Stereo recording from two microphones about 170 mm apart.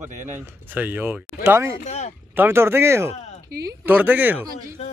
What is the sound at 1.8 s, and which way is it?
Speech, 40° left (ahead or behind).